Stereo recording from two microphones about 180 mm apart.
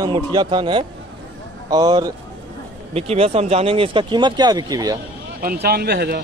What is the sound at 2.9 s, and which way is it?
Speech, 35° right (ahead or behind).